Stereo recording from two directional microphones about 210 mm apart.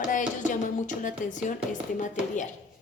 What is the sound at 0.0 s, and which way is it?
Speech, 35° left (ahead or behind).